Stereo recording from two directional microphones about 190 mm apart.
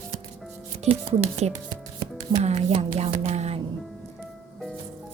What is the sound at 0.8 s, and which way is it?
Speech, 30° right (ahead or behind).